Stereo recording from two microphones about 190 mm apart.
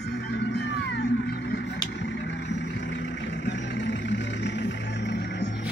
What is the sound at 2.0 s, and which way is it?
Vehicle, 65° left (ahead or behind).